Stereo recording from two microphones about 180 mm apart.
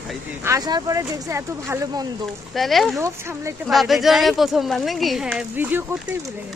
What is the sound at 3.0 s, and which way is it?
Speech, 15° right (ahead or behind).